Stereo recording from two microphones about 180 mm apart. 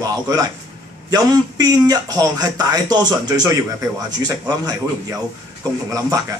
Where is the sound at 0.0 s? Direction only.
20° right (ahead or behind).